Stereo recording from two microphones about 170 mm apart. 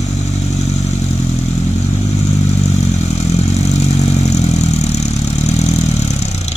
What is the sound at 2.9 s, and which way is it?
Vehicle, 40° left (ahead or behind).